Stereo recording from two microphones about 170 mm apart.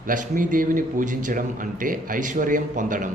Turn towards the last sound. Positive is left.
turn(degrees=-50)  # may be behind; listen again after turning